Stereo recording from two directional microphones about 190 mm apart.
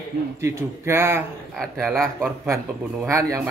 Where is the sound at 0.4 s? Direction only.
15° right (ahead or behind).